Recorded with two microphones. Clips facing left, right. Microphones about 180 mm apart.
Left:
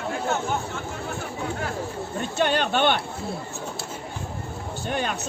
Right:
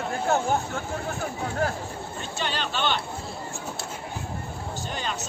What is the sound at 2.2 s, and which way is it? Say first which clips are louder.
Speech: left 8 dB; 55° left (ahead or behind).